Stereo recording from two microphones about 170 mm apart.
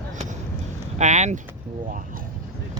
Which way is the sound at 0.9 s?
45° right (ahead or behind).